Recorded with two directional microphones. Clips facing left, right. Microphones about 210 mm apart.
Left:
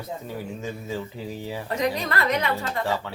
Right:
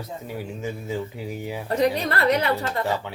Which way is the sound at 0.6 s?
15° right (ahead or behind).